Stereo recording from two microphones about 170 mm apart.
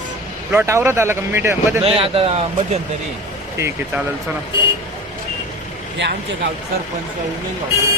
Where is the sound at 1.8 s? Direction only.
35° right (ahead or behind).